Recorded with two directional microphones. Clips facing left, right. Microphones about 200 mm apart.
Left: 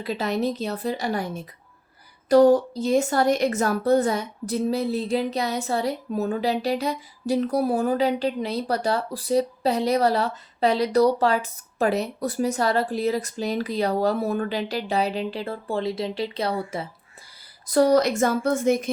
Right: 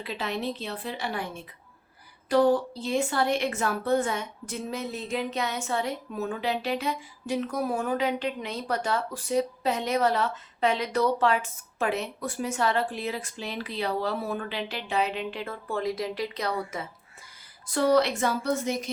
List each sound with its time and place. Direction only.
0.0 s a woman's voice: 40° left (ahead or behind)